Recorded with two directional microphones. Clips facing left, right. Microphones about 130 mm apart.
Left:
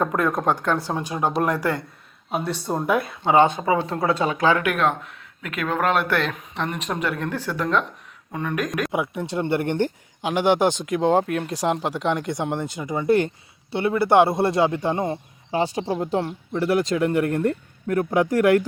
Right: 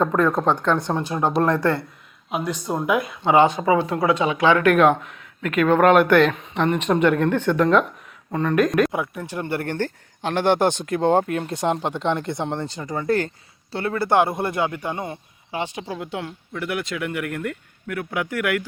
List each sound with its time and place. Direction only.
0.0 s speech: 10° left (ahead or behind)
2.8 s speech: 30° left (ahead or behind)
4.0 s speech: 40° left (ahead or behind)
4.6 s speech: centre (ahead or behind)
8.9 s speech: 20° left (ahead or behind); by 18.6 s 35° left (ahead or behind)